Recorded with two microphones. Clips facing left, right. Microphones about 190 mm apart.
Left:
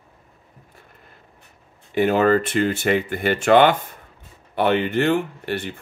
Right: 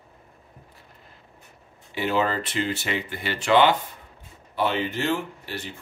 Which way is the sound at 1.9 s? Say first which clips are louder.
Left 8 dB; 50° left (ahead or behind).